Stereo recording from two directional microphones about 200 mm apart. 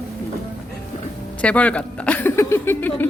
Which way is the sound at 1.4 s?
5° left (ahead or behind).